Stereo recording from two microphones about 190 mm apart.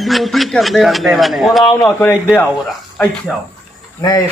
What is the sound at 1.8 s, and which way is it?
Speech, 10° left (ahead or behind).